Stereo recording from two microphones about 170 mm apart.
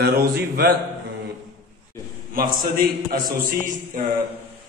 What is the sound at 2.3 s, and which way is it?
Speech, 60° right (ahead or behind).